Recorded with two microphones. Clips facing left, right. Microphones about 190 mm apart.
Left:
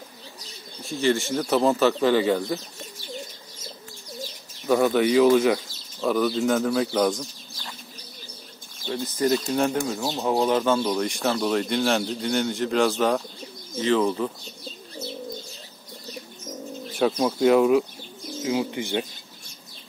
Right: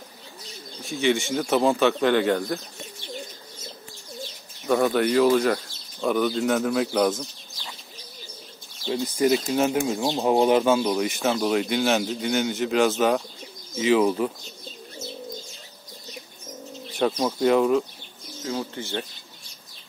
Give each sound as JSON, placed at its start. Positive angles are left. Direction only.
{"t": 0.8, "sound": "speech", "side_deg": 0}
{"t": 4.6, "sound": "speech", "side_deg": 0}
{"t": 8.8, "sound": "speech", "side_deg": -15}
{"t": 9.8, "sound": "speech", "side_deg": -20}
{"t": 17.2, "sound": "speech", "side_deg": 5}
{"t": 18.4, "sound": "speech", "side_deg": 15}